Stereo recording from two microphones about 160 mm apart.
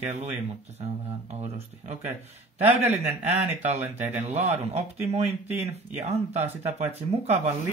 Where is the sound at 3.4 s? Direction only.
45° right (ahead or behind).